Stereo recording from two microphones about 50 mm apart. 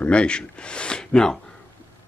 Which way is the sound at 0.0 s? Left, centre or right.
Left.